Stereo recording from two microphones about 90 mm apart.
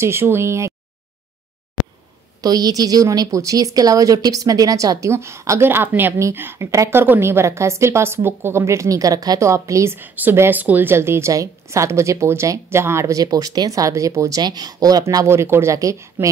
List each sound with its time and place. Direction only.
0.0 s a woman's voice: 25° right (ahead or behind)
2.4 s a woman's voice: 45° right (ahead or behind)
9.9 s a woman's voice: 20° right (ahead or behind)
13.2 s a woman's voice: 45° right (ahead or behind)
15.2 s a woman's voice: 30° right (ahead or behind)